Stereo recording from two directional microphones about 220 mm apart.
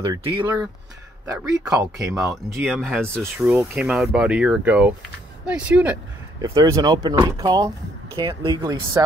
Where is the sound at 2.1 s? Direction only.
Centre (ahead or behind).